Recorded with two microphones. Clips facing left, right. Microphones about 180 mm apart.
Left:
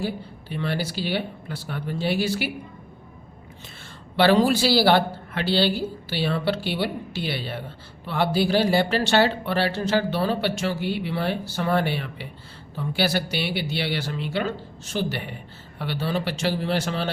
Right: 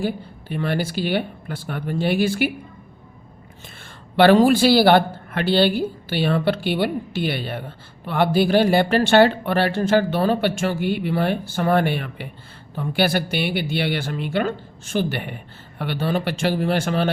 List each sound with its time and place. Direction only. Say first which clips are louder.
0.0 s speech: right 4 dB; 50° right (ahead or behind)
4.2 s speech: right 5 dB; 50° right (ahead or behind)